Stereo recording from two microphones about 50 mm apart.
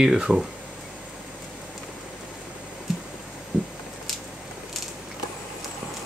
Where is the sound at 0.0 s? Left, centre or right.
Centre.